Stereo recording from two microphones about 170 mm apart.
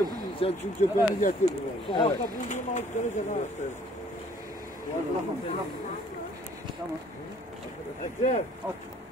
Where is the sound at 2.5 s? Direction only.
45° left (ahead or behind).